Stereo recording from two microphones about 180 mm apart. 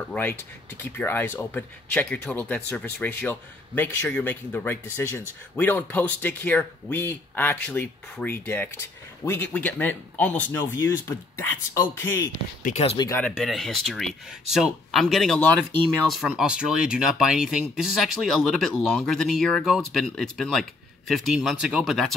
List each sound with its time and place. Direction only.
0.1 s speech: 10° left (ahead or behind)
12.6 s speech: 40° left (ahead or behind)
12.9 s speech: 20° left (ahead or behind)
13.2 s speech: centre (ahead or behind)